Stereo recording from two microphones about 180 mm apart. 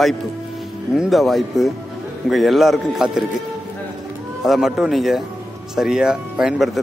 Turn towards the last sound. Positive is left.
turn(degrees=-5)  # may be behind; listen again after turning